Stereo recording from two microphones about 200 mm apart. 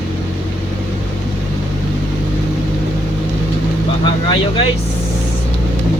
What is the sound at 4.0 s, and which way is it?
Vehicle, 25° left (ahead or behind).